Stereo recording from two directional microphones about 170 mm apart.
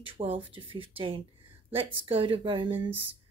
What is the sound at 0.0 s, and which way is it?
Speech, 30° right (ahead or behind).